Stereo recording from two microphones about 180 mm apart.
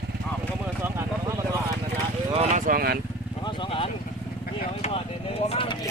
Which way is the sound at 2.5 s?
55° right (ahead or behind).